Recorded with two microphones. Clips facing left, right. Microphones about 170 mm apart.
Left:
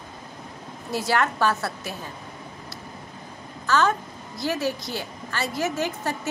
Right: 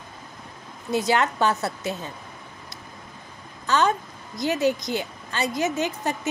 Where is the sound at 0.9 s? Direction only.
20° right (ahead or behind).